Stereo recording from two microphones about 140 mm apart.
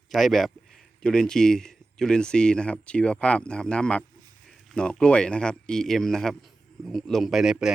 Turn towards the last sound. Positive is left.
turn(degrees=-5)  # may be behind; listen again after turning